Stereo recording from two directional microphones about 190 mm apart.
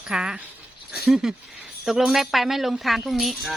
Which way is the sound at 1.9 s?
Centre (ahead or behind).